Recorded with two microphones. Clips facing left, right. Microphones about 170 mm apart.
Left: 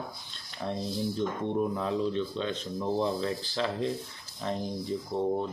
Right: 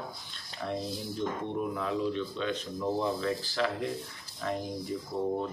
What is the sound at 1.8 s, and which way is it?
Speech, 30° left (ahead or behind).